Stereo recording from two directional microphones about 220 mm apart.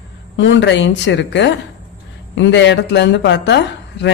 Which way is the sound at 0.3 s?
55° left (ahead or behind).